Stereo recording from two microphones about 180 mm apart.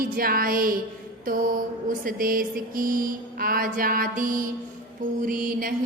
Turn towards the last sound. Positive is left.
turn(degrees=-50)  # may be behind; listen again after turning